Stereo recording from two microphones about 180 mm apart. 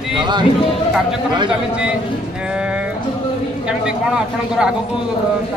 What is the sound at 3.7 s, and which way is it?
Speech, 5° right (ahead or behind).